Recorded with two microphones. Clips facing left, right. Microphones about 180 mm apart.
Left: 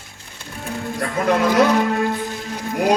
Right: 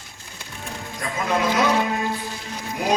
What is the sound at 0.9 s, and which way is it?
A man's voice, 60° left (ahead or behind).